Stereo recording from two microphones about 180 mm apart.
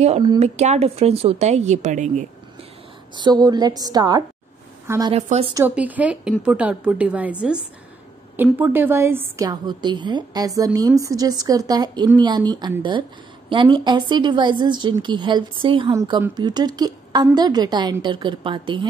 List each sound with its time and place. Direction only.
0.4 s speech: 35° right (ahead or behind)
3.2 s a woman's voice: 25° right (ahead or behind)
5.1 s speech: 35° right (ahead or behind)
5.8 s a woman's voice: 10° right (ahead or behind)
8.4 s a woman's voice: 10° right (ahead or behind); by 18.9 s 30° right (ahead or behind)